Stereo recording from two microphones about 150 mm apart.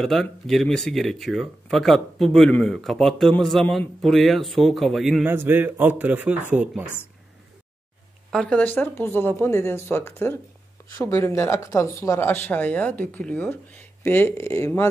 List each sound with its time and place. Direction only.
0.0 s speech: centre (ahead or behind)
5.2 s a man's voice: 15° right (ahead or behind)
8.3 s speech: 5° left (ahead or behind)